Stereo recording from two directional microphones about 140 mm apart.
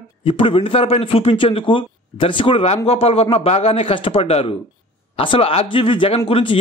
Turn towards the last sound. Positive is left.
turn(degrees=40)  # may be behind; listen again after turning